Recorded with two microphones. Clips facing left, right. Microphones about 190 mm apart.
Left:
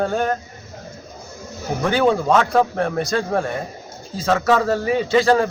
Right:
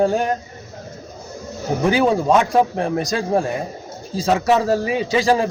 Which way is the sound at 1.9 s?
10° right (ahead or behind).